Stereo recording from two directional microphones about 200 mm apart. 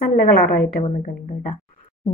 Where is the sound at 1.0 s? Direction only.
35° left (ahead or behind).